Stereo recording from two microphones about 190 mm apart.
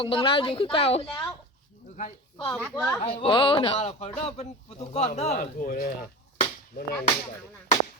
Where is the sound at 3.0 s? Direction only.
25° left (ahead or behind); by 6.1 s 50° left (ahead or behind).